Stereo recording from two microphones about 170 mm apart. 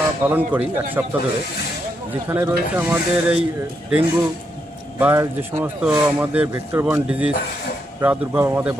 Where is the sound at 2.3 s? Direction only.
15° right (ahead or behind).